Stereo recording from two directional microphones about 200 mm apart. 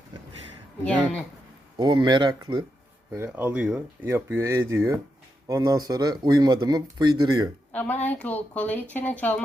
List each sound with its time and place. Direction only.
0.9 s speech: 5° left (ahead or behind)
1.7 s speech: 20° right (ahead or behind)
3.1 s speech: 10° right (ahead or behind)
7.7 s speech: 10° left (ahead or behind)